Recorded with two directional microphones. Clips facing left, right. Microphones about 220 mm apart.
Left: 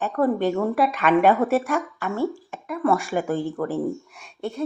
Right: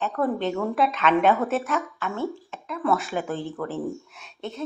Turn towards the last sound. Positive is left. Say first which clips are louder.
# left 4 dB
turn(degrees=10)  # may be behind; listen again after turning